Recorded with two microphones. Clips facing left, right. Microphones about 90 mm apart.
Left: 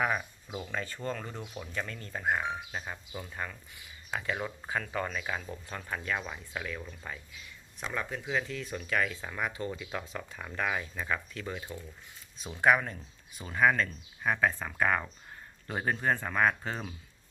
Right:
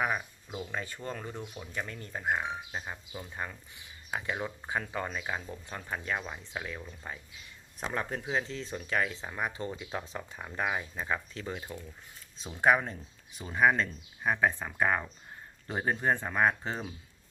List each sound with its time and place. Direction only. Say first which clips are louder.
0.7 s speech: left 4 dB; 15° right (ahead or behind)
7.8 s speech: right 2 dB; 40° right (ahead or behind)
12.6 s speech: even; 25° right (ahead or behind)